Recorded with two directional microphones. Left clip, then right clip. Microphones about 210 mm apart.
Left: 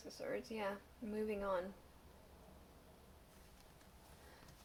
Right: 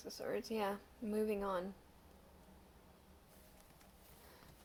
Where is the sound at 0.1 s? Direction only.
40° right (ahead or behind).